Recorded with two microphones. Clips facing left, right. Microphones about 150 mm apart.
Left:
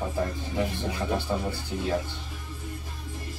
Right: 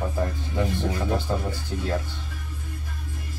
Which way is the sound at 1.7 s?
10° left (ahead or behind).